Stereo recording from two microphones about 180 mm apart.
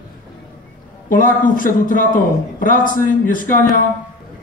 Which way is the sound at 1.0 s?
50° left (ahead or behind).